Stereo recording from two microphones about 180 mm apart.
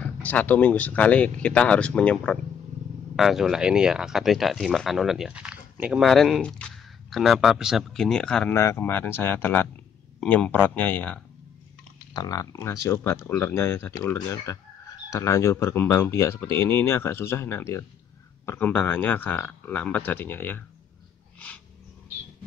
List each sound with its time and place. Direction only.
0.0 s speech: 10° left (ahead or behind)
12.1 s speech: 20° left (ahead or behind)